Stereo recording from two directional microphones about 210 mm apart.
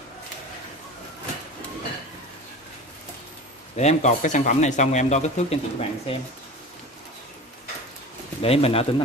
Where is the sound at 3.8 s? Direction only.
35° left (ahead or behind).